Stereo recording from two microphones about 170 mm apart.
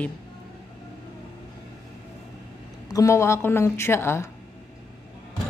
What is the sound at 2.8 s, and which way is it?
Speech, 20° left (ahead or behind).